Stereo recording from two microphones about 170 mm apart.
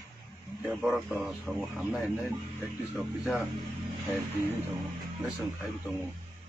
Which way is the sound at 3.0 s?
Centre (ahead or behind).